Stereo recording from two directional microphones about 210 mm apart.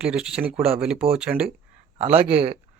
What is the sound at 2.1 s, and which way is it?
Speech, 30° right (ahead or behind).